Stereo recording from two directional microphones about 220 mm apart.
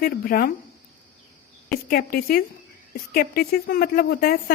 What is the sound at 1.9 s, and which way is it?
A woman's voice, 40° left (ahead or behind).